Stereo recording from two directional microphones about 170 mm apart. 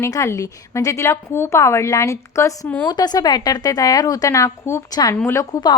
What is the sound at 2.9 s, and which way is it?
A woman's voice, 25° left (ahead or behind).